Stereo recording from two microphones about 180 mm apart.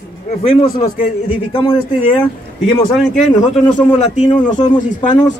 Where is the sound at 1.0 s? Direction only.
30° left (ahead or behind).